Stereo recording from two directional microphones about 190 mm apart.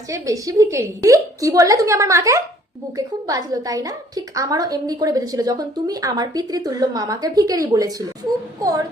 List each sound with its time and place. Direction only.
0.1 s a woman's voice: 15° right (ahead or behind)